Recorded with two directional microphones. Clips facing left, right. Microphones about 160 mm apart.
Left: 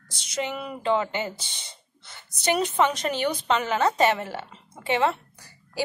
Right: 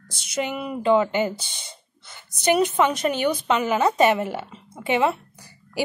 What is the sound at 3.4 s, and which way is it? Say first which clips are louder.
A woman's voice: right 1 dB; 10° right (ahead or behind).